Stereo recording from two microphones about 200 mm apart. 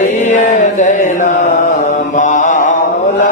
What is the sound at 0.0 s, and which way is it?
Mantra, 35° left (ahead or behind).